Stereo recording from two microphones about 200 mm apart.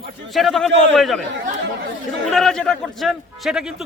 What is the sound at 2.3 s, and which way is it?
A man's voice, centre (ahead or behind).